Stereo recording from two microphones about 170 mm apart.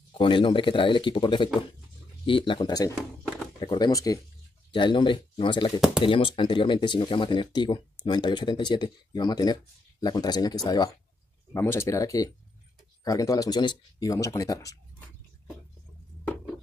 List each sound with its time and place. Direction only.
0.2 s speech: 30° left (ahead or behind)